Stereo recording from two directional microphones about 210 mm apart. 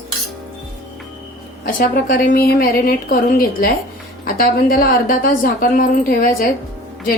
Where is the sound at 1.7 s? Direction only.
40° left (ahead or behind).